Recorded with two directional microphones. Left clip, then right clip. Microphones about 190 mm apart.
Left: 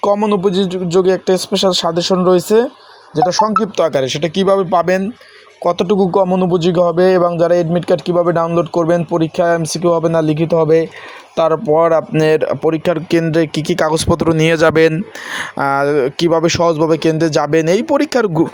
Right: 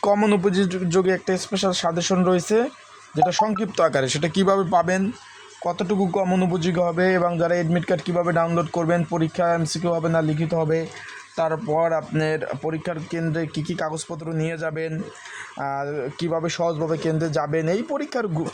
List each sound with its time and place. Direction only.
0.0 s speech: 10° left (ahead or behind); by 6.2 s 30° left (ahead or behind)
6.2 s speech: 20° left (ahead or behind)